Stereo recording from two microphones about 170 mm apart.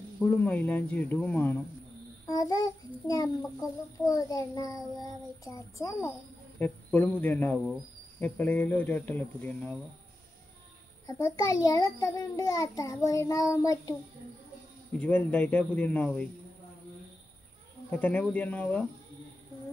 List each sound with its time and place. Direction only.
0.4 s a child's voice: 10° left (ahead or behind)
11.1 s a child's voice: 20° left (ahead or behind)
14.9 s speech: 10° left (ahead or behind)
17.8 s speech: 5° left (ahead or behind)